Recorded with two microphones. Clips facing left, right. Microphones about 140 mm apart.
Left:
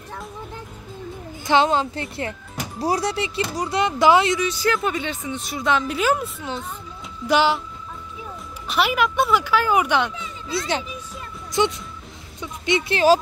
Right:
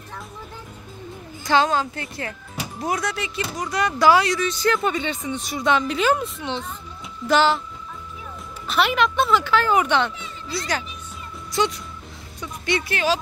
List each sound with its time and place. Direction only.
1.4 s a woman's voice: 25° left (ahead or behind)
4.5 s speech: 5° left (ahead or behind)
8.6 s speech: 10° left (ahead or behind)
11.5 s a woman's voice: 20° left (ahead or behind)
12.4 s music: 20° left (ahead or behind)